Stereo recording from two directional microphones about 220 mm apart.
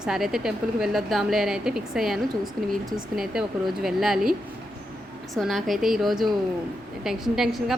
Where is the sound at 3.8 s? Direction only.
Centre (ahead or behind).